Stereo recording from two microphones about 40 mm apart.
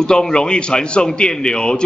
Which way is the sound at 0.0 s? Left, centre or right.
Left.